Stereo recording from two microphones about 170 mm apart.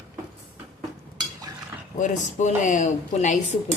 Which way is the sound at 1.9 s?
45° left (ahead or behind).